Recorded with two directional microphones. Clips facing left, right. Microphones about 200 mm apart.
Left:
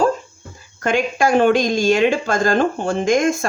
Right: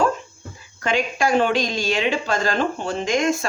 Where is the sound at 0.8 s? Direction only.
50° left (ahead or behind).